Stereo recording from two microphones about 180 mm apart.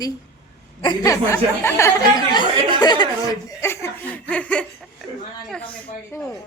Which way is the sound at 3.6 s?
15° left (ahead or behind).